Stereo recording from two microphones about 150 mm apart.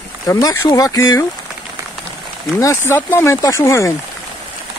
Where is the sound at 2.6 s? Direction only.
20° left (ahead or behind).